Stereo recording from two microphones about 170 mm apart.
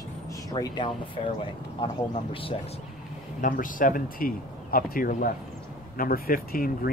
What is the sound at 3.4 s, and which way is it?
Speech, 50° left (ahead or behind).